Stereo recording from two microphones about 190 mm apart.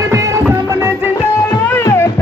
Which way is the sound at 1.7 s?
10° left (ahead or behind).